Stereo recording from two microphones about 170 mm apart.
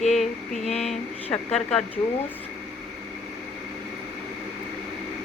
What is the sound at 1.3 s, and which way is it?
Speech, 10° left (ahead or behind).